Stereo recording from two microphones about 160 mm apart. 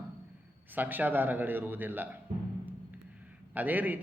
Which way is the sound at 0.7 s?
10° right (ahead or behind).